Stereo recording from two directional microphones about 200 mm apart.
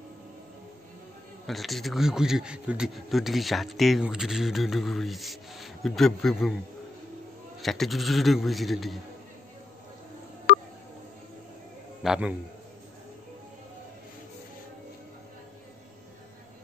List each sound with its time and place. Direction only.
1.5 s a man's voice: centre (ahead or behind)
7.6 s a man's voice: centre (ahead or behind)
10.5 s a sound: 55° left (ahead or behind)
12.0 s a man's voice: 5° right (ahead or behind)